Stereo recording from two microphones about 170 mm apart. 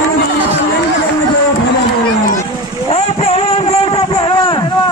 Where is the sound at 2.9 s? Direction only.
35° left (ahead or behind).